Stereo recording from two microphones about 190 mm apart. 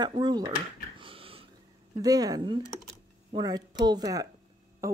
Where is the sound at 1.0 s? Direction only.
30° right (ahead or behind).